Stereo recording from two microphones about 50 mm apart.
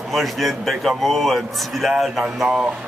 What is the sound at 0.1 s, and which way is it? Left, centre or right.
A man's voice, centre.